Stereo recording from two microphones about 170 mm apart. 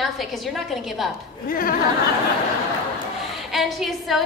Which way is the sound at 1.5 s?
55° left (ahead or behind).